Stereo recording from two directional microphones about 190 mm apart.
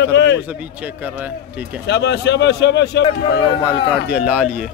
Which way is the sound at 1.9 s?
65° left (ahead or behind).